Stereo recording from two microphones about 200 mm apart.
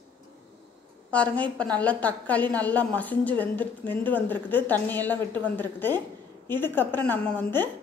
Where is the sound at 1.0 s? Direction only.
5° left (ahead or behind).